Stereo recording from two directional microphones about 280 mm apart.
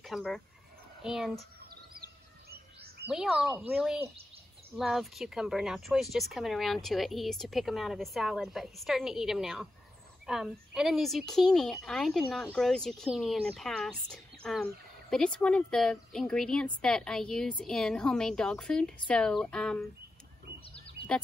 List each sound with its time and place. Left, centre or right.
0.0 s speech: centre
3.1 s speech: centre
20.6 s a sound: centre